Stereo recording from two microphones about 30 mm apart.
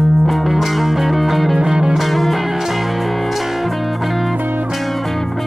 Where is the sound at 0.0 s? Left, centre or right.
Centre.